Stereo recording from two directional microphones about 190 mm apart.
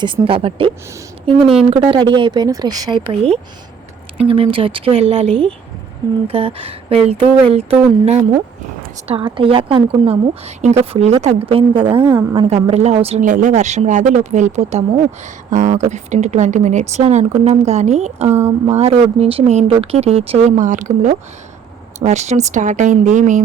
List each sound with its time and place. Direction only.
0.0 s a woman's voice: 25° right (ahead or behind)
18.3 s speech: 15° right (ahead or behind)
18.8 s a woman's voice: 30° right (ahead or behind)